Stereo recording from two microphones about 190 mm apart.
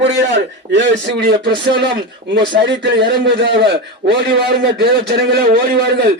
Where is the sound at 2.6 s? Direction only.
65° right (ahead or behind).